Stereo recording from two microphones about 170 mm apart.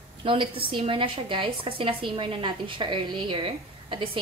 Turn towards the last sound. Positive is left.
turn(degrees=-30)  # may be behind; listen again after turning